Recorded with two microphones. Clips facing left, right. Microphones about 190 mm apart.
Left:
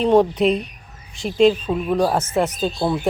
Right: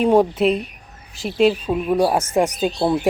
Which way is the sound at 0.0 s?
10° right (ahead or behind).